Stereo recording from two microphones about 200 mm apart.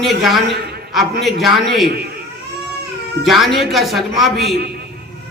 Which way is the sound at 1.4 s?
Centre (ahead or behind).